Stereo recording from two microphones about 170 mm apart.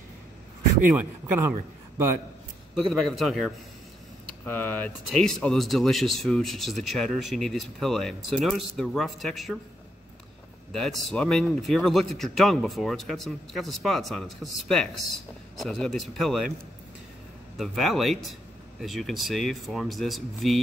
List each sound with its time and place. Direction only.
0.9 s speech: 10° right (ahead or behind)
2.9 s speech: centre (ahead or behind)
10.7 s speech: centre (ahead or behind)
17.6 s speech: centre (ahead or behind)